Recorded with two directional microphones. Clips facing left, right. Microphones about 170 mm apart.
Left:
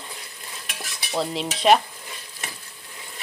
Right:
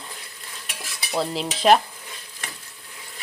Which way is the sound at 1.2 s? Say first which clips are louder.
Right 1 dB; centre (ahead or behind).